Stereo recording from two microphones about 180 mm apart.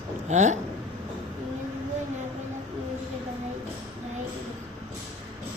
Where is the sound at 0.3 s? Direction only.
40° right (ahead or behind).